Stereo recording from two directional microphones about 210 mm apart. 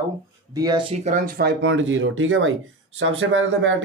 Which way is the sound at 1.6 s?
60° right (ahead or behind).